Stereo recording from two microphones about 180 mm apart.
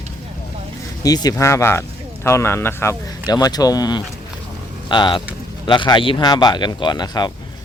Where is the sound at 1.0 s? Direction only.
20° left (ahead or behind).